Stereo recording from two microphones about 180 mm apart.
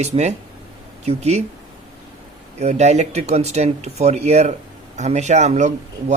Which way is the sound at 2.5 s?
40° right (ahead or behind).